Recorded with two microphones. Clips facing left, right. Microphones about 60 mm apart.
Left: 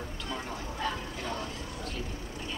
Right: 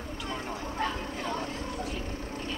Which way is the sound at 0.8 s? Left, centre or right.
Right.